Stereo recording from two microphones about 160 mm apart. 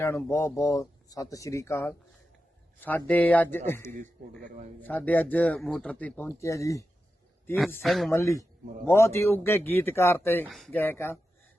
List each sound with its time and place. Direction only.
0.0 s speech: 15° left (ahead or behind)
3.9 s speech: 50° right (ahead or behind)
4.8 s speech: 10° left (ahead or behind)
7.9 s speech: centre (ahead or behind)
8.1 s speech: 20° left (ahead or behind)
10.5 s speech: centre (ahead or behind)
10.8 s speech: 15° left (ahead or behind)